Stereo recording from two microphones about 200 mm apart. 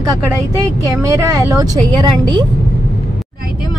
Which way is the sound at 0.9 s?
15° right (ahead or behind).